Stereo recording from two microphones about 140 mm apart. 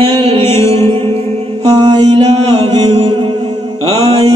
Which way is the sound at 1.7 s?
30° right (ahead or behind).